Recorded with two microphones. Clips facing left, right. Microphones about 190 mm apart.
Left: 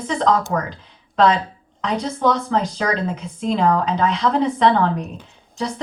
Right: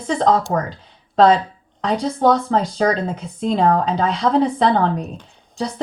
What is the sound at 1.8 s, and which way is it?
A woman's voice, 35° right (ahead or behind).